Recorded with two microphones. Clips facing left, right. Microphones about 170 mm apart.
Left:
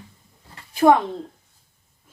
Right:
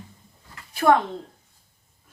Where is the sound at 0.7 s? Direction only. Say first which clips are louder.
Left 3 dB; 20° left (ahead or behind).